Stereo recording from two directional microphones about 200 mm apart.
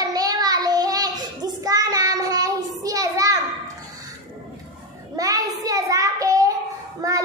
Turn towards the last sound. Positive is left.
turn(degrees=-15)  # may be behind; listen again after turning